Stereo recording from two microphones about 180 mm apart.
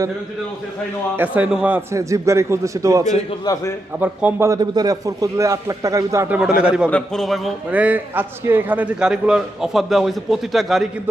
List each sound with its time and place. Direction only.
1.1 s a man's voice: 10° right (ahead or behind)
3.2 s a man's voice: 20° left (ahead or behind)
4.0 s a man's voice: 10° right (ahead or behind)